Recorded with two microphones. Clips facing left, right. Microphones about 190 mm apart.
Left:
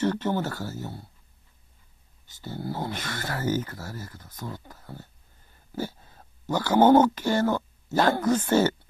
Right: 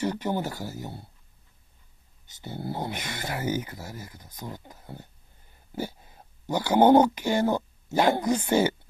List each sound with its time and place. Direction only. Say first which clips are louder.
0.0 s speech: left 2 dB; 15° right (ahead or behind)
2.2 s speech: left 1 dB; 20° right (ahead or behind)